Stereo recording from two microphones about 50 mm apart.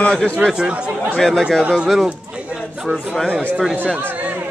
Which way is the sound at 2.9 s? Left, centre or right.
Right.